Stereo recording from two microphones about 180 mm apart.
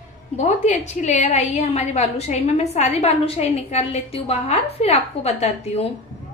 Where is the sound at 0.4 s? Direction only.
40° left (ahead or behind).